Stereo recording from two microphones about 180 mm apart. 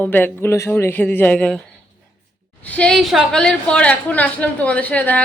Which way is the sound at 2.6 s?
5° left (ahead or behind).